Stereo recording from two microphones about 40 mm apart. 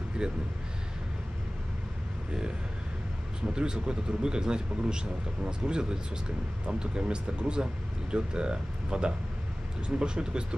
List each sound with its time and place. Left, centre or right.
0.2 s speech: right
3.5 s speech: right